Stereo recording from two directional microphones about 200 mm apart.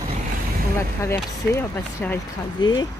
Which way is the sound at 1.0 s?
10° left (ahead or behind).